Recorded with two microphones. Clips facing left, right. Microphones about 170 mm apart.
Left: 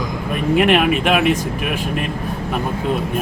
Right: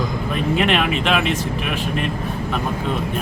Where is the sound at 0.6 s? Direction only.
10° left (ahead or behind).